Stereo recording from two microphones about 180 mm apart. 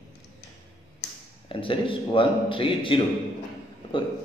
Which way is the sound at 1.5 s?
30° left (ahead or behind).